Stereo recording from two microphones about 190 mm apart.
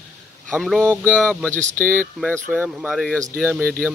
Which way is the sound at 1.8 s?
45° right (ahead or behind).